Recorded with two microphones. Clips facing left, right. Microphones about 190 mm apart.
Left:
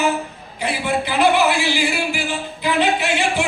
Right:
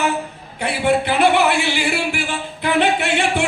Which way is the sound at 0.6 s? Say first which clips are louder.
Right 4 dB; 60° right (ahead or behind).